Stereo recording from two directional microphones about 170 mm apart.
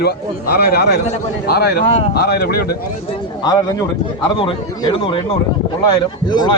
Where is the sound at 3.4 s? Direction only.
25° left (ahead or behind).